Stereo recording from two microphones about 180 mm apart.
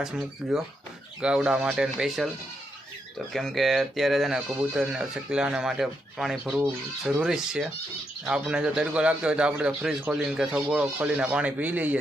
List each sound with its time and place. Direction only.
0.0 s speech: 5° right (ahead or behind)
3.3 s speech: centre (ahead or behind)